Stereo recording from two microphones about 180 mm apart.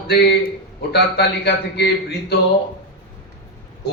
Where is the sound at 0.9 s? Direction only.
65° left (ahead or behind).